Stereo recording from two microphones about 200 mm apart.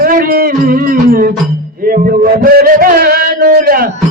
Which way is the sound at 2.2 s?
45° right (ahead or behind).